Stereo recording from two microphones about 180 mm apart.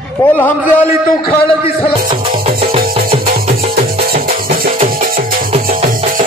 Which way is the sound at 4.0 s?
55° right (ahead or behind).